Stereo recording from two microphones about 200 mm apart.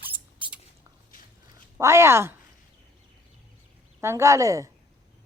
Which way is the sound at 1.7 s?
15° right (ahead or behind).